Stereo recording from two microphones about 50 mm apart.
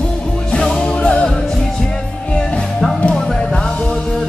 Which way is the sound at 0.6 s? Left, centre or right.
Centre.